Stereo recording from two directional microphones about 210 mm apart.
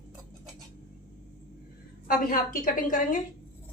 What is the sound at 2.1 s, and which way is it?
A woman's voice, 40° left (ahead or behind).